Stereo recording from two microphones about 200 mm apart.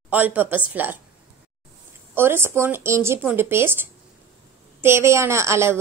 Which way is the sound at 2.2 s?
10° right (ahead or behind).